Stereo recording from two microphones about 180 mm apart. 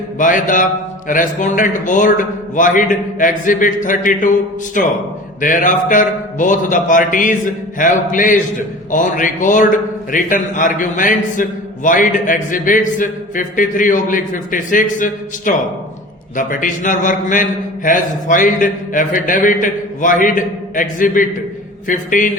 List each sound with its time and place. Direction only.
0.2 s a man's voice: 45° left (ahead or behind)